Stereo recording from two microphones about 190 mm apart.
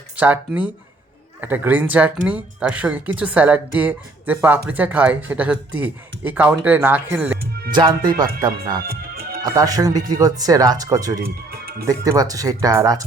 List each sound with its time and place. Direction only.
0.2 s speech: 10° right (ahead or behind)
7.7 s speech: 25° right (ahead or behind)
8.9 s music: 55° right (ahead or behind)
9.4 s speech: 20° right (ahead or behind)
11.2 s music: 55° right (ahead or behind)
11.9 s speech: 20° right (ahead or behind)